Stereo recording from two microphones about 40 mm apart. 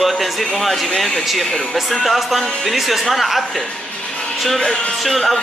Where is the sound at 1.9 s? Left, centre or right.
Centre.